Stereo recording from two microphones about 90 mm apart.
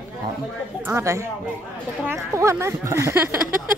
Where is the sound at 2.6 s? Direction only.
30° right (ahead or behind).